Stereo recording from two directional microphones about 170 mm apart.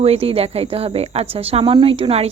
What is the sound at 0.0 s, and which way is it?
Speech, 35° right (ahead or behind).